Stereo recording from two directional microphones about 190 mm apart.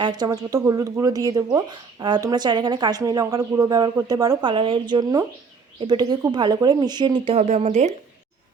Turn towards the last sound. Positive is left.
turn(degrees=-35)  # may be behind; listen again after turning